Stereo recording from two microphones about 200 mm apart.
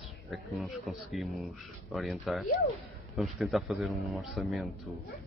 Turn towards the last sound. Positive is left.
turn(degrees=0)  # may be behind; listen again after turning